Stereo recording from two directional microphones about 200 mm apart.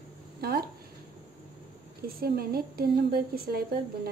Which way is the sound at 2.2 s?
50° right (ahead or behind).